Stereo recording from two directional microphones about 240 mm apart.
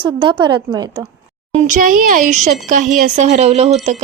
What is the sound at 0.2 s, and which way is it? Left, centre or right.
Speech, centre.